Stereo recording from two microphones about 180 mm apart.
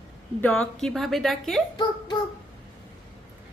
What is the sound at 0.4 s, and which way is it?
Speech, 5° left (ahead or behind).